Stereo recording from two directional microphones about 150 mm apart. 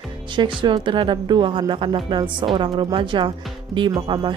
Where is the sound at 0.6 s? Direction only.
35° right (ahead or behind).